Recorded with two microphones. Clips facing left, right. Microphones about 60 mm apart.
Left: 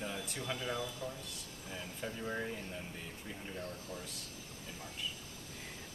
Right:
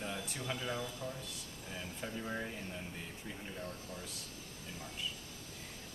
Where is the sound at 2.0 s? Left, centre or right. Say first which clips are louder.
Left 1 dB; centre.